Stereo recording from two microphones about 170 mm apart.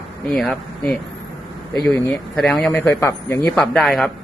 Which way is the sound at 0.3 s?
Centre (ahead or behind).